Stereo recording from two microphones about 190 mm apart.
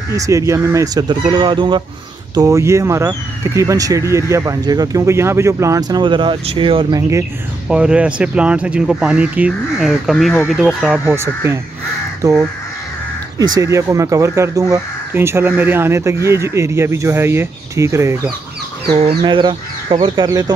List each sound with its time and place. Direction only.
0.1 s speech: 15° right (ahead or behind)
7.6 s speech: 5° right (ahead or behind)
18.9 s speech: 30° right (ahead or behind)